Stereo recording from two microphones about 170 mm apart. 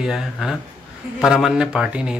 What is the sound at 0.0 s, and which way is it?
Speech, centre (ahead or behind).